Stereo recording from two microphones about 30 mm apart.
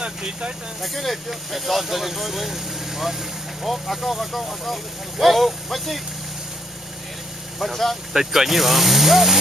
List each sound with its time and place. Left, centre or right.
0.0 s speech: right
0.8 s speech: centre
3.6 s speech: centre
7.5 s speech: centre
8.1 s speech: centre